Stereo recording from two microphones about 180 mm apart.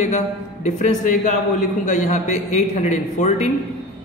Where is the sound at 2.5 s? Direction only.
40° left (ahead or behind).